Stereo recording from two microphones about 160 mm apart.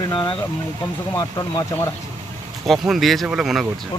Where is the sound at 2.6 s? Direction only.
Centre (ahead or behind).